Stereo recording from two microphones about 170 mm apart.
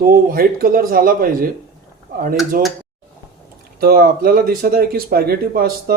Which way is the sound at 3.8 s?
60° right (ahead or behind).